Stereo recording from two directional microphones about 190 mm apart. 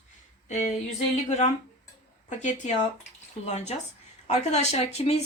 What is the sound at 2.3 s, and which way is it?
Speech, 40° left (ahead or behind).